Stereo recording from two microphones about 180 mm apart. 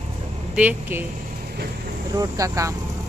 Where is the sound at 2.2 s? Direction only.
20° right (ahead or behind).